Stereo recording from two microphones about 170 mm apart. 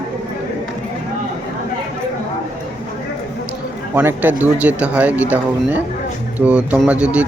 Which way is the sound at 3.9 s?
10° right (ahead or behind).